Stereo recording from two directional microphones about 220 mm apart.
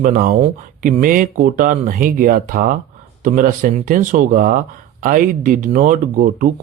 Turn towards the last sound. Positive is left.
turn(degrees=-35)  # may be behind; listen again after turning